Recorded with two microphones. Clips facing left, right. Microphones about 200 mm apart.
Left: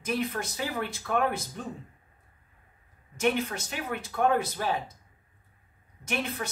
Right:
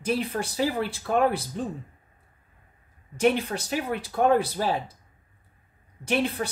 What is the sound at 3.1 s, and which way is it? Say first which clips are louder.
Speech: right 4 dB; 35° right (ahead or behind).